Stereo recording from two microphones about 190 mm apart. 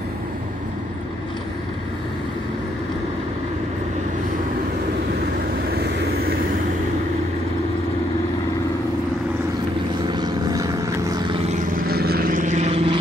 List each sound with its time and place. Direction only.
5.7 s vehicle: 60° right (ahead or behind)
10.0 s vehicle: 20° right (ahead or behind)
11.7 s vehicle: 55° right (ahead or behind); by 13.0 s 30° right (ahead or behind)